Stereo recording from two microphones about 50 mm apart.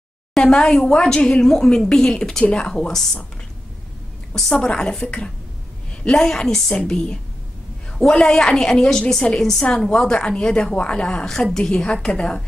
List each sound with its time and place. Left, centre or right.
0.4 s a woman's voice: centre
4.6 s a woman's voice: centre